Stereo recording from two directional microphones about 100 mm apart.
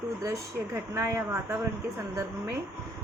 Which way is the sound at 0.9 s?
30° right (ahead or behind).